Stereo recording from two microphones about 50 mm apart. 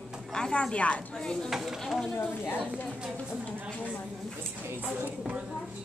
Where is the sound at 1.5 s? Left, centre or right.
Centre.